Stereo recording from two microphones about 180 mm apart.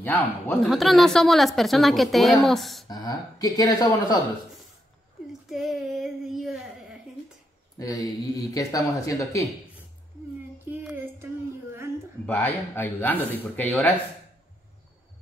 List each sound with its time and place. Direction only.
0.0 s speech: 10° left (ahead or behind)
0.7 s a woman's voice: centre (ahead or behind)
2.9 s speech: 20° left (ahead or behind)
5.5 s a sound: centre (ahead or behind)
7.8 s speech: 20° left (ahead or behind)
10.8 s music: 10° right (ahead or behind)
12.3 s speech: 10° left (ahead or behind)